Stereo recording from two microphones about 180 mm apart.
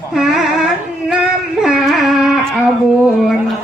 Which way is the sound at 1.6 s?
Centre (ahead or behind).